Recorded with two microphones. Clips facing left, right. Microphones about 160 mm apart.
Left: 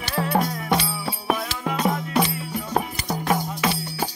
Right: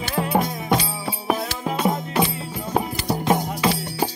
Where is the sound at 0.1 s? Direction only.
15° right (ahead or behind).